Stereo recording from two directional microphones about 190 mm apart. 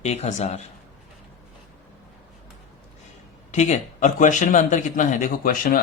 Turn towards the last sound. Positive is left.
turn(degrees=45)  # may be behind; listen again after turning